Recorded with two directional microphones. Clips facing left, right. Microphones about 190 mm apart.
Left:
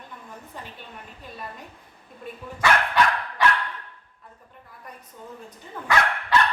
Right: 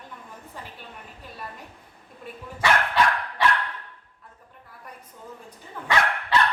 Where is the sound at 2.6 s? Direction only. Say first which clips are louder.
Left 1 dB; 30° right (ahead or behind).